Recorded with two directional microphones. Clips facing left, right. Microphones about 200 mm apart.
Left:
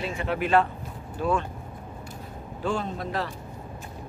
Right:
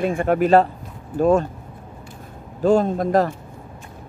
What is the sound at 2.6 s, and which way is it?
Speech, 45° right (ahead or behind).